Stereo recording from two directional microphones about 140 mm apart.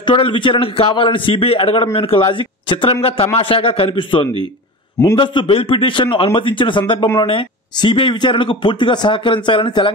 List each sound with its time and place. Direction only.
0.0 s a man's voice: 35° left (ahead or behind)